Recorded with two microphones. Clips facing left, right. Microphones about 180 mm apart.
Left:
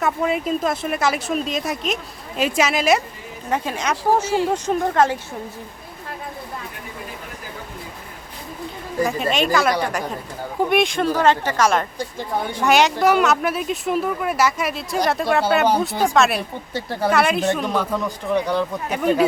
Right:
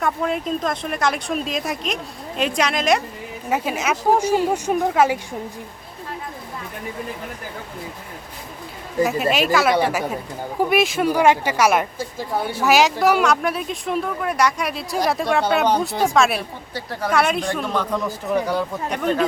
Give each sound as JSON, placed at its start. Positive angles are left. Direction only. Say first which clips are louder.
{"t": 0.0, "sound": "speech", "louder": "left 1 dB", "side_deg": 5}
{"t": 3.5, "sound": "speech", "louder": "right 1 dB", "side_deg": -5}
{"t": 9.0, "sound": "speech", "louder": "even", "side_deg": -5}
{"t": 16.7, "sound": "speech", "louder": "left 4 dB", "side_deg": 30}
{"t": 17.1, "sound": "speech", "louder": "left 2 dB", "side_deg": 0}
{"t": 18.9, "sound": "speech", "louder": "left 3 dB", "side_deg": 5}